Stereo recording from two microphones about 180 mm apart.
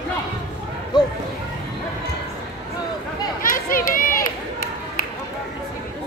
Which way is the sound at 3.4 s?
50° left (ahead or behind).